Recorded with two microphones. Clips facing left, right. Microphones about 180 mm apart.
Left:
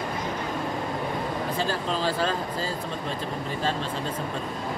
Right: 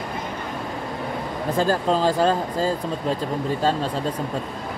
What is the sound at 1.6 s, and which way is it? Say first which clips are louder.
Speech: right 10 dB; 45° right (ahead or behind).